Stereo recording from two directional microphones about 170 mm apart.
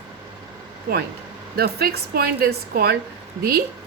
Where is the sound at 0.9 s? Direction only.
60° right (ahead or behind).